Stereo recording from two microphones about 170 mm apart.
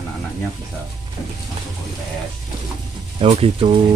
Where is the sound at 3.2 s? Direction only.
35° right (ahead or behind).